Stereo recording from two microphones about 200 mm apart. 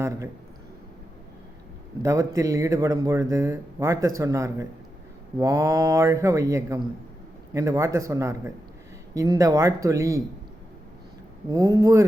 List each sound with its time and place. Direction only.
2.0 s a man's voice: 15° right (ahead or behind)
11.5 s a man's voice: 15° right (ahead or behind)